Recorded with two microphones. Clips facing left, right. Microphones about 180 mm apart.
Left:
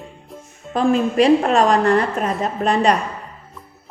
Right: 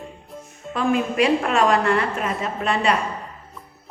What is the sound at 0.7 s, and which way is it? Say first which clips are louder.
A woman's voice: left 4 dB; 35° left (ahead or behind).